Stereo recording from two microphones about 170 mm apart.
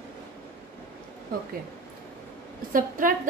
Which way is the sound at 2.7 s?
55° right (ahead or behind).